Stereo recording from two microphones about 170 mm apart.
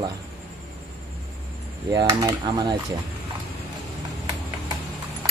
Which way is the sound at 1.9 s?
25° right (ahead or behind).